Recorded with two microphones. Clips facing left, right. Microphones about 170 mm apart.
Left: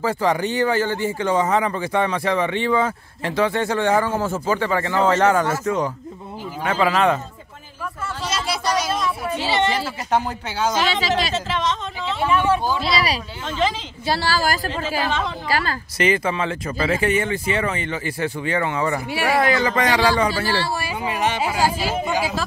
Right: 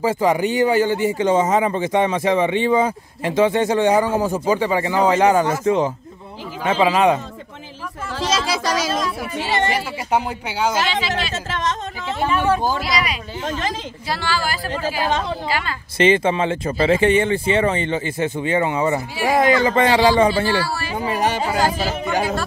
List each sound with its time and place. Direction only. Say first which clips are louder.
0.0 s speech: right 3 dB; 15° right (ahead or behind)
8.2 s a sound: right 5 dB; 90° right
9.7 s speech: right 1 dB; 10° right (ahead or behind)
10.9 s a woman's voice: left 2 dB; 40° left (ahead or behind)
11.3 s speech: left 1 dB; 45° right (ahead or behind)
12.8 s a woman's voice: left 1 dB; 30° left (ahead or behind)
15.0 s speech: right 3 dB; 40° right (ahead or behind)
15.4 s a woman's voice: left 1 dB; 40° left (ahead or behind)
16.0 s speech: right 5 dB; 25° right (ahead or behind)
20.4 s speech: right 2 dB; 25° left (ahead or behind)
20.9 s speech: right 4 dB; 35° right (ahead or behind)
21.4 s speech: right 1 dB; 10° left (ahead or behind)